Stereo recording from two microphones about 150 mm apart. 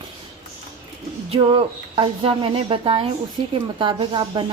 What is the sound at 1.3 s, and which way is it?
A woman's voice, 40° right (ahead or behind).